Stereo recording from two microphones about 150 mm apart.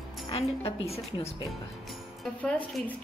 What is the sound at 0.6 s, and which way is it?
Speech, 40° left (ahead or behind).